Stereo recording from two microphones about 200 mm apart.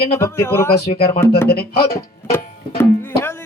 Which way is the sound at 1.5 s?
50° left (ahead or behind).